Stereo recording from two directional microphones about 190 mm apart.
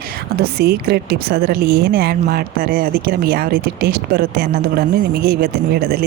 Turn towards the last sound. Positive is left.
turn(degrees=-55)  # may be behind; listen again after turning